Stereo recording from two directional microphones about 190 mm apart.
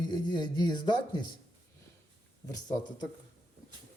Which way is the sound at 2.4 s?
20° left (ahead or behind).